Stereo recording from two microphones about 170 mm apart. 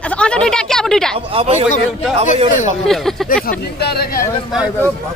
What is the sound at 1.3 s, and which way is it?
Speech, 35° right (ahead or behind).